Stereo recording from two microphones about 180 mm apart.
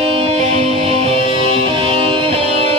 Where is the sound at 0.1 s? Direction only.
35° right (ahead or behind).